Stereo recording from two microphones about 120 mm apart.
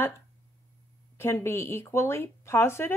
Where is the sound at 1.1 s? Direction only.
20° left (ahead or behind).